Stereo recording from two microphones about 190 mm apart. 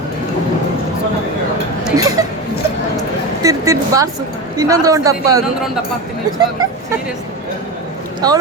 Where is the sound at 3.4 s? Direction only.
15° right (ahead or behind).